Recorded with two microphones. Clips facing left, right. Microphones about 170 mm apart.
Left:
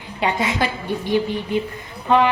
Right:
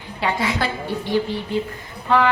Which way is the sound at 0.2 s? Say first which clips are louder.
Left 1 dB; 20° left (ahead or behind).